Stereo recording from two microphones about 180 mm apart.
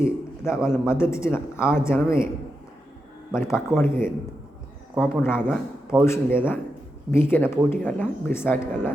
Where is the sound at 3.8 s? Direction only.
15° left (ahead or behind).